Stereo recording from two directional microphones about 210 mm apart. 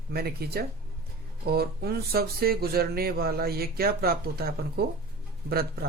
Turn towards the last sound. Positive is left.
turn(degrees=-45)  # may be behind; listen again after turning